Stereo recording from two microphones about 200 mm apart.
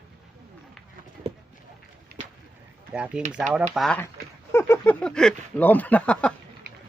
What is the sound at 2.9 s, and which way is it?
Speech, 5° right (ahead or behind).